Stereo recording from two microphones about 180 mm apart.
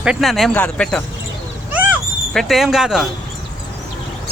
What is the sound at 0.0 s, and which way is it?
Speech, centre (ahead or behind).